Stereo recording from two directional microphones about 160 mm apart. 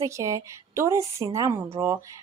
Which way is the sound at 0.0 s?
20° right (ahead or behind).